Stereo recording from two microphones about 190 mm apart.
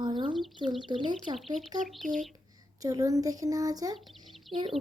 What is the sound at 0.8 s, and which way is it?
Speech, 25° right (ahead or behind).